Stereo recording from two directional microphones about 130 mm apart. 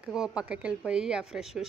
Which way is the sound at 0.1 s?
5° right (ahead or behind).